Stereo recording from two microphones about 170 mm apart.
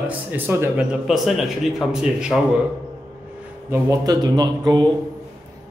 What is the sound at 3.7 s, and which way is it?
Speech, 20° right (ahead or behind).